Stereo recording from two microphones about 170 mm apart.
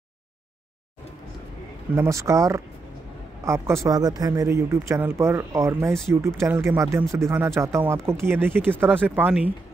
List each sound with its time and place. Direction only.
2.0 s speech: 15° right (ahead or behind)